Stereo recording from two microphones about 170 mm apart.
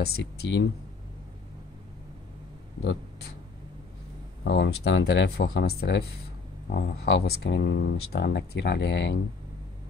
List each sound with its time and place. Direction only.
0.0 s speech: 70° left (ahead or behind); by 0.7 s 90° left
4.5 s speech: 90° left